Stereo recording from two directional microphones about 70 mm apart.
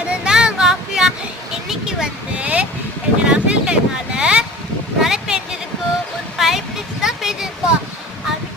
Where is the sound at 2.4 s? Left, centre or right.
Centre.